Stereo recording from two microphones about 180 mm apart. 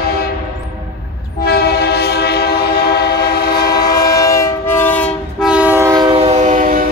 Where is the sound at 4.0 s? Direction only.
20° left (ahead or behind).